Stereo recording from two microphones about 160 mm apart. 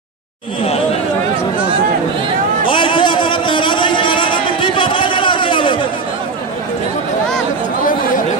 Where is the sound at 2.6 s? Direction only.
30° left (ahead or behind).